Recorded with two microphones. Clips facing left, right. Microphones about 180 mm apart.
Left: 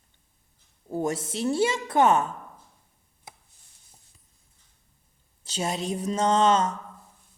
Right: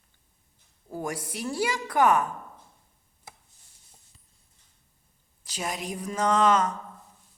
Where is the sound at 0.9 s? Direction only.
25° left (ahead or behind).